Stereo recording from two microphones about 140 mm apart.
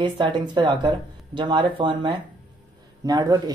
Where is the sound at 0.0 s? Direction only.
35° right (ahead or behind).